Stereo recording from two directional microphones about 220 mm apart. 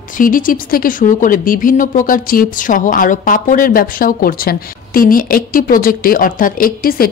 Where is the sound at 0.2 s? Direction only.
40° left (ahead or behind).